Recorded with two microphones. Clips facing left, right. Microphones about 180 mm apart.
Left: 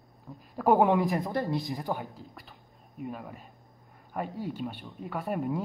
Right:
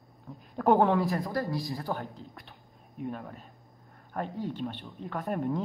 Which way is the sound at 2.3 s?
Centre (ahead or behind).